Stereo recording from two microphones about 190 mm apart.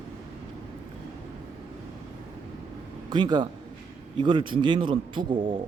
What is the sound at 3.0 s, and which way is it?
A man's voice, 20° right (ahead or behind).